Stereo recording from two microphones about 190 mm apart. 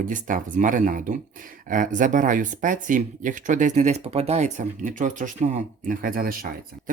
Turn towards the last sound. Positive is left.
turn(degrees=-50)  # may be behind; listen again after turning